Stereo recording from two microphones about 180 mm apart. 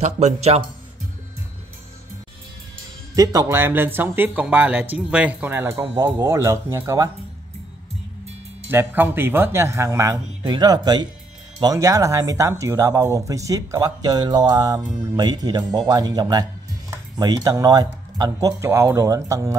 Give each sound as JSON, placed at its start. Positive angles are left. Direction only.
{"t": 0.0, "sound": "a man's voice", "side_deg": -35}
{"t": 3.2, "sound": "speech", "side_deg": -20}
{"t": 8.6, "sound": "speech", "side_deg": -10}